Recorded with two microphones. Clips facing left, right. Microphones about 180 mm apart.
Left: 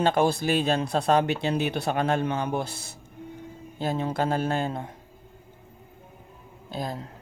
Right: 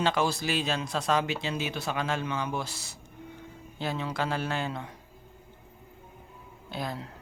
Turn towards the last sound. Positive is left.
turn(degrees=40)  # may be behind; listen again after turning